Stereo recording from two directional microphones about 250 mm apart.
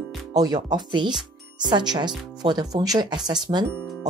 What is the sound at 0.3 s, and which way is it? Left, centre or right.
Speech, centre.